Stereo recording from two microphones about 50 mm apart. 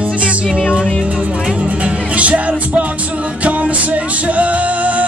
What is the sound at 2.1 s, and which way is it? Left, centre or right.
Music, right.